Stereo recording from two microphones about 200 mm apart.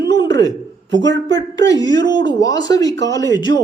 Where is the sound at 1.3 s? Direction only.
20° left (ahead or behind).